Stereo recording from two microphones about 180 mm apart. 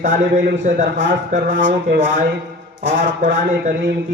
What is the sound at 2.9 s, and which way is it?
Speech, 50° right (ahead or behind).